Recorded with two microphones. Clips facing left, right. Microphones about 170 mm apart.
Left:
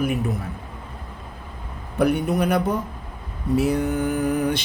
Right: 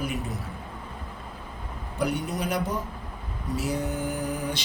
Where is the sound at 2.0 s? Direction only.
55° left (ahead or behind).